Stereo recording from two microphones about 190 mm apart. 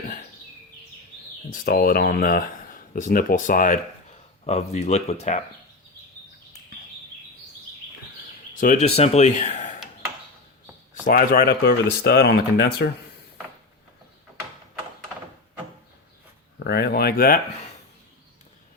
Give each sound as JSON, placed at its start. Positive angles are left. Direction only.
{"t": 1.5, "sound": "speech", "side_deg": 50}
{"t": 8.6, "sound": "speech", "side_deg": 40}
{"t": 11.0, "sound": "speech", "side_deg": 45}
{"t": 16.6, "sound": "speech", "side_deg": 60}